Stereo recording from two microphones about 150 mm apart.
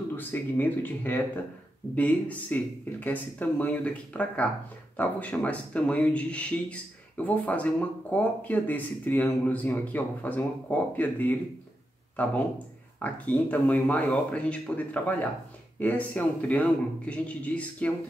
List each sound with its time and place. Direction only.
0.1 s speech: 15° left (ahead or behind)